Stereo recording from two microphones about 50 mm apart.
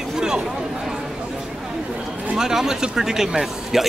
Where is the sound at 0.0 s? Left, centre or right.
Centre.